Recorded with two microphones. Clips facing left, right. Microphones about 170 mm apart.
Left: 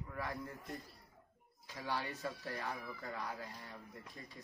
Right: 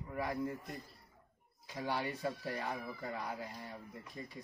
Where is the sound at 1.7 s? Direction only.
15° right (ahead or behind).